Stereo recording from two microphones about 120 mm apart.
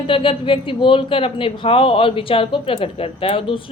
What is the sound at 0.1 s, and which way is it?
Speech, 45° left (ahead or behind).